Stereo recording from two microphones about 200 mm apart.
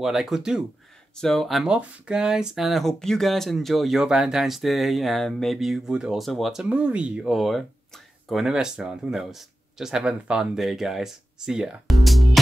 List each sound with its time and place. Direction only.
0.0 s speech: centre (ahead or behind)